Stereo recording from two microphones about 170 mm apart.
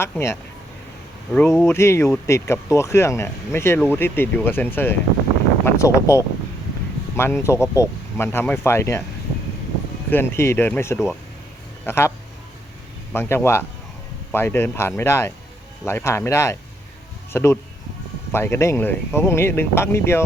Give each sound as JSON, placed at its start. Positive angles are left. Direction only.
{"t": 0.0, "sound": "speech", "side_deg": 15}
{"t": 10.1, "sound": "speech", "side_deg": 15}
{"t": 10.9, "sound": "speech", "side_deg": 0}
{"t": 11.9, "sound": "speech", "side_deg": 15}
{"t": 13.1, "sound": "speech", "side_deg": 15}